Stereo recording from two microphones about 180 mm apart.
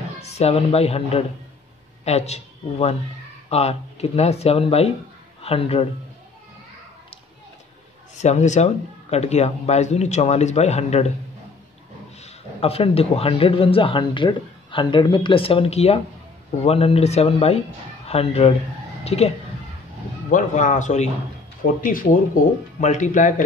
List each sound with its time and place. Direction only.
0.2 s a man's voice: 35° left (ahead or behind)
8.2 s speech: 40° left (ahead or behind)
12.2 s speech: 35° left (ahead or behind)
20.2 s a man's voice: 45° left (ahead or behind)
21.6 s speech: 55° left (ahead or behind)
22.8 s a man's voice: 40° left (ahead or behind)